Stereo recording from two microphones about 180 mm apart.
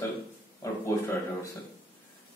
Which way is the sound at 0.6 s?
15° left (ahead or behind).